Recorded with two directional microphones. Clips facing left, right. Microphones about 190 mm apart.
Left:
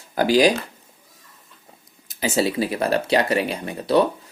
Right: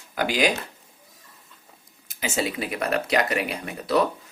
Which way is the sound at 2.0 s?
35° left (ahead or behind).